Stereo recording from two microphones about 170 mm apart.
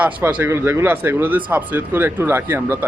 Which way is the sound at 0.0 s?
10° right (ahead or behind).